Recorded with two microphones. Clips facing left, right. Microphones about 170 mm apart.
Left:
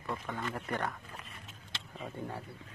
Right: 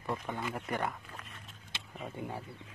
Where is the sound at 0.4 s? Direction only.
5° right (ahead or behind).